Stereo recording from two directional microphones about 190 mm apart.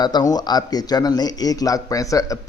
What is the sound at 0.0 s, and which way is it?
A man's voice, 20° left (ahead or behind).